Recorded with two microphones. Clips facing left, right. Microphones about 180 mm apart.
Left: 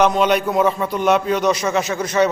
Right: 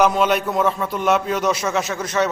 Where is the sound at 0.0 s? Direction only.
5° right (ahead or behind).